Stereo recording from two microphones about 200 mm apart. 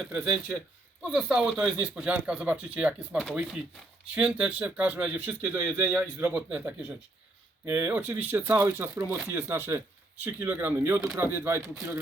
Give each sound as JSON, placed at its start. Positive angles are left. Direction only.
{"t": 0.1, "sound": "speech", "side_deg": -10}